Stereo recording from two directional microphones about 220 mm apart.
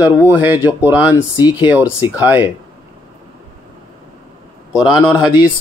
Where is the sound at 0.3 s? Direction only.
10° right (ahead or behind).